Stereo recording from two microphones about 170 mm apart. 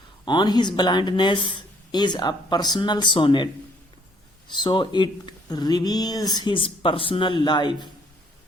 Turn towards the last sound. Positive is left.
turn(degrees=25)  # may be behind; listen again after turning